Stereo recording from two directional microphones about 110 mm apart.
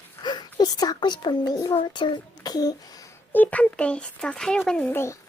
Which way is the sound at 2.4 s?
35° left (ahead or behind).